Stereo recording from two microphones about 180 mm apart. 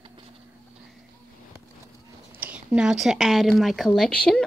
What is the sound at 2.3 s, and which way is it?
A woman's voice, 10° right (ahead or behind).